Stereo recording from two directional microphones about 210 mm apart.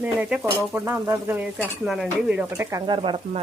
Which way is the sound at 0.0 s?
5° right (ahead or behind).